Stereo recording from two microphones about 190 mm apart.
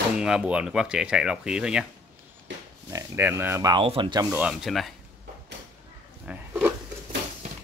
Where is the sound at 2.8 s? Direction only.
15° right (ahead or behind).